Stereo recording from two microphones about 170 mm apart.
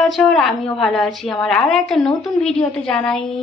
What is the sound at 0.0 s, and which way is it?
A woman's voice, centre (ahead or behind).